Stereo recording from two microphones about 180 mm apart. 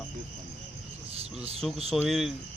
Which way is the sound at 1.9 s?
Centre (ahead or behind).